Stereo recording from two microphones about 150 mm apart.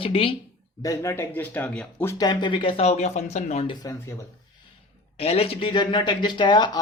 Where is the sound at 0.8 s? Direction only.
20° left (ahead or behind).